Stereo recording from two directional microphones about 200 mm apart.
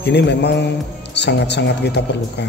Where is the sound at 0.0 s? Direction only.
60° left (ahead or behind).